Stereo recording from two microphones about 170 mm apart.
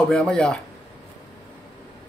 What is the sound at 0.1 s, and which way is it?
Speech, 5° left (ahead or behind).